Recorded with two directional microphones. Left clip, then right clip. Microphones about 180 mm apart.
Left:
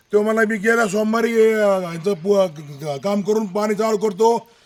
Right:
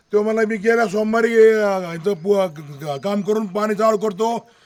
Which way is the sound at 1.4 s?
30° left (ahead or behind).